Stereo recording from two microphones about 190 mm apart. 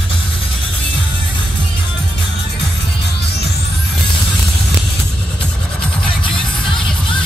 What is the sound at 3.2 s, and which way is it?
Music, 60° left (ahead or behind).